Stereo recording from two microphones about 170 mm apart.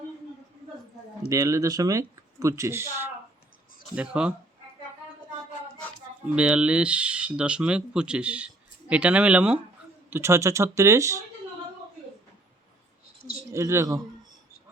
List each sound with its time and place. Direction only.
1.3 s speech: 20° right (ahead or behind)
6.3 s speech: 5° right (ahead or behind)
13.5 s speech: 15° right (ahead or behind)